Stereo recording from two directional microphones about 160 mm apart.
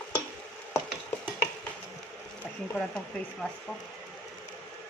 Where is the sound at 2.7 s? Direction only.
5° left (ahead or behind).